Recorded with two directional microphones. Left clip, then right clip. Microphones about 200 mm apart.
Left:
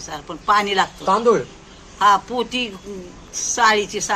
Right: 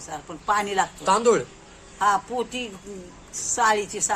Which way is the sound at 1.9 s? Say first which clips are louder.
Left 6 dB; 10° right (ahead or behind).